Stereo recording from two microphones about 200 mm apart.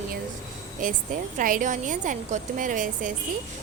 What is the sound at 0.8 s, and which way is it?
A woman's voice, 40° right (ahead or behind).